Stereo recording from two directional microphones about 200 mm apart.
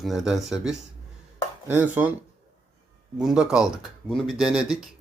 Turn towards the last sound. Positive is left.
turn(degrees=-5)  # may be behind; listen again after turning